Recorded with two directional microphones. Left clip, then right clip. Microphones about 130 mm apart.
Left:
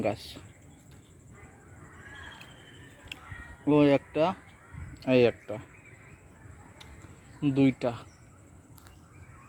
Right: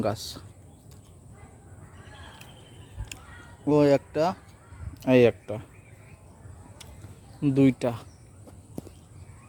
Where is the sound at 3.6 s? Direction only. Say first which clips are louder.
Right 2 dB; 25° right (ahead or behind).